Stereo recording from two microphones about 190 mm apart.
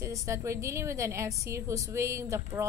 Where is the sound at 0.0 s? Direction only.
15° right (ahead or behind).